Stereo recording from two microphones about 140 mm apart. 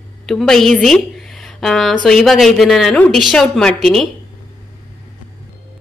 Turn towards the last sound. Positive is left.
turn(degrees=5)  # may be behind; listen again after turning